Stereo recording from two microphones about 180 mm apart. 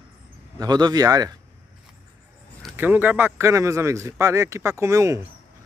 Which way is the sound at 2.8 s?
10° right (ahead or behind).